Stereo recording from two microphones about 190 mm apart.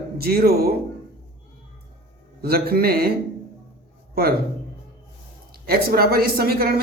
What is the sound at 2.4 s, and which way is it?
Speech, 55° right (ahead or behind).